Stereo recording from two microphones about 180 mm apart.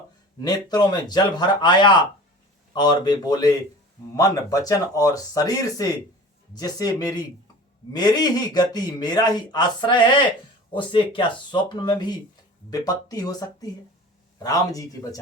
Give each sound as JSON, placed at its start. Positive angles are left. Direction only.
{"t": 0.3, "sound": "speech", "side_deg": 20}